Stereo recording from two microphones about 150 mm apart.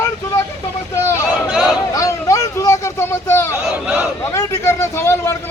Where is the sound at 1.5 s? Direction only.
Centre (ahead or behind).